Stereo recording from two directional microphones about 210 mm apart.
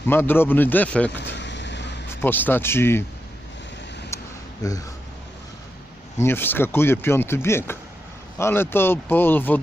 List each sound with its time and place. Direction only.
0.1 s speech: 10° left (ahead or behind)
1.2 s vehicle: 55° left (ahead or behind)
2.2 s speech: 10° left (ahead or behind)
4.1 s a sound: 15° left (ahead or behind)
4.6 s speech: 15° left (ahead or behind)
6.1 s speech: 10° left (ahead or behind)